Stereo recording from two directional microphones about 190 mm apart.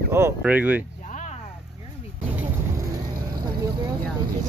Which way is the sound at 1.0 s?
40° left (ahead or behind).